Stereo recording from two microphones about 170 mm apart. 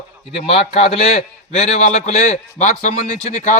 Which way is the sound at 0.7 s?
40° left (ahead or behind).